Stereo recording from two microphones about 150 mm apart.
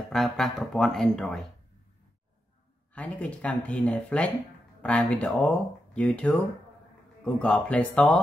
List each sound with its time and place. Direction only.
0.1 s speech: centre (ahead or behind)
2.9 s speech: 10° left (ahead or behind)